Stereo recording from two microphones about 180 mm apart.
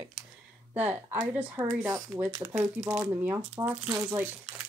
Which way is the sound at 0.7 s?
10° right (ahead or behind).